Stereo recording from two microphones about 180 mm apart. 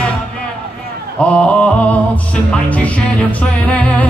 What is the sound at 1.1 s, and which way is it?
Music, 5° left (ahead or behind).